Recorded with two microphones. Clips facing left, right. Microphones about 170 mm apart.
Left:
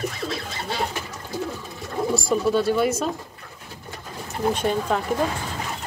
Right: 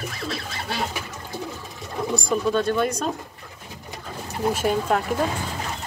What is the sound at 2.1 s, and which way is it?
Speech, 5° left (ahead or behind).